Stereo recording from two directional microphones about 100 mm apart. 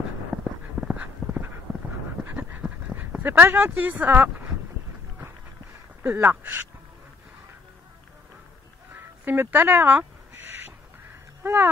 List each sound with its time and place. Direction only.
0.4 s a sound: 5° right (ahead or behind)
1.2 s dog: 25° left (ahead or behind)
2.3 s dog: 15° right (ahead or behind)
6.2 s speech: 20° right (ahead or behind)
8.9 s a sound: 20° right (ahead or behind)
11.4 s speech: 20° right (ahead or behind)